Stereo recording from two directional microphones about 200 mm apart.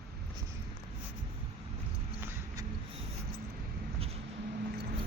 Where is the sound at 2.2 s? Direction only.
10° right (ahead or behind).